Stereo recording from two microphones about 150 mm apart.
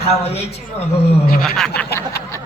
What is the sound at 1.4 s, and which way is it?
Speech, 5° left (ahead or behind).